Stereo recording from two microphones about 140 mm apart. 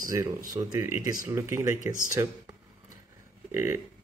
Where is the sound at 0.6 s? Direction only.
30° right (ahead or behind).